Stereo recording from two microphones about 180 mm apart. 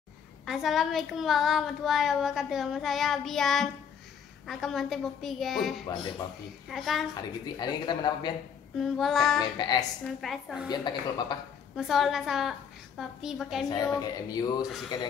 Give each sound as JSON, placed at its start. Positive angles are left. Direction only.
{"t": 0.5, "sound": "speech", "side_deg": 0}
{"t": 7.2, "sound": "speech", "side_deg": 20}
{"t": 8.7, "sound": "speech", "side_deg": 0}
{"t": 9.4, "sound": "speech", "side_deg": 25}
{"t": 10.0, "sound": "speech", "side_deg": 0}
{"t": 10.7, "sound": "speech", "side_deg": 25}
{"t": 11.7, "sound": "speech", "side_deg": 0}
{"t": 13.9, "sound": "speech", "side_deg": 20}